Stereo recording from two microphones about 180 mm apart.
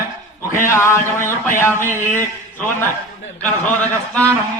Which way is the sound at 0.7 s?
15° left (ahead or behind).